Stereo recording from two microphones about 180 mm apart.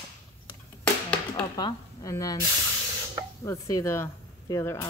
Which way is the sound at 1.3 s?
20° left (ahead or behind).